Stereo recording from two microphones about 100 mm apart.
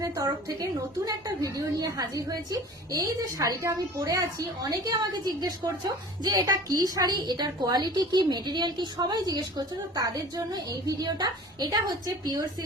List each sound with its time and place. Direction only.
0.0 s a woman's voice: 35° right (ahead or behind)